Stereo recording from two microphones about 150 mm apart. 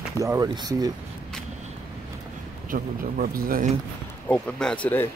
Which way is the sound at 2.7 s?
70° right (ahead or behind).